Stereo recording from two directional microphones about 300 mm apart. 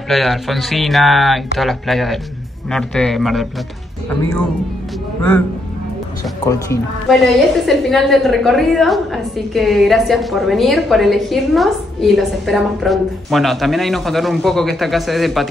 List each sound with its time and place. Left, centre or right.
0.1 s a woman's voice: centre
6.5 s a woman's voice: centre